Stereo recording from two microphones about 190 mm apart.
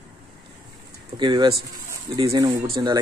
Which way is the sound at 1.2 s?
25° right (ahead or behind).